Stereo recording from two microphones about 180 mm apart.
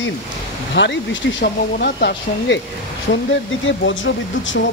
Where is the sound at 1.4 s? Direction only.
65° left (ahead or behind).